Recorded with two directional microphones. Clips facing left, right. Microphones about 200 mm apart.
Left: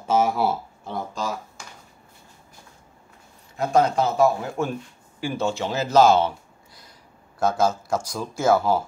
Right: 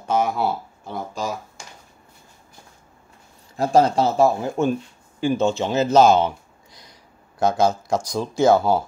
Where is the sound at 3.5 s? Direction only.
30° right (ahead or behind).